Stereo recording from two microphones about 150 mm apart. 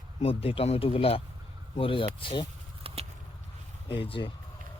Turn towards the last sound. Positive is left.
turn(degrees=35)  # may be behind; listen again after turning